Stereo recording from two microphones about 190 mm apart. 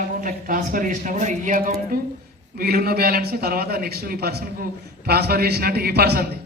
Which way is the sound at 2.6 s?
55° right (ahead or behind).